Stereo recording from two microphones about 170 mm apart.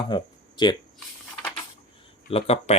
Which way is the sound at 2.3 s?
35° left (ahead or behind).